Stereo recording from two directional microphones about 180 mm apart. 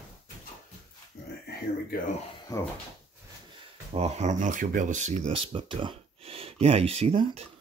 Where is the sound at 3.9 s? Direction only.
35° right (ahead or behind).